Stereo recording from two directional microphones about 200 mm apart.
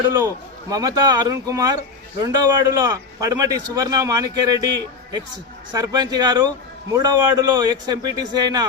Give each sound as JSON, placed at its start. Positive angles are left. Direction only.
{"t": 0.1, "sound": "speech", "side_deg": -15}
{"t": 5.7, "sound": "speech", "side_deg": -20}